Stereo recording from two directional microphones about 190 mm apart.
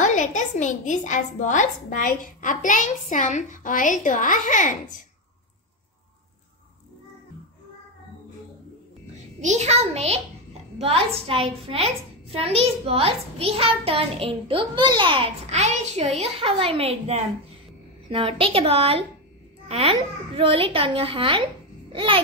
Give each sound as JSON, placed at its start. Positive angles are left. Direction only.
{"t": 0.0, "sound": "a woman's voice", "side_deg": 40}
{"t": 9.4, "sound": "a woman's voice", "side_deg": -40}
{"t": 11.2, "sound": "a child's voice", "side_deg": -30}